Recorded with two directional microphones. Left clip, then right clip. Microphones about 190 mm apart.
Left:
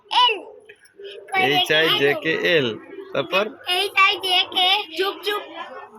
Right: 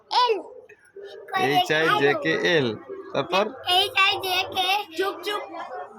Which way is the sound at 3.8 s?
30° right (ahead or behind).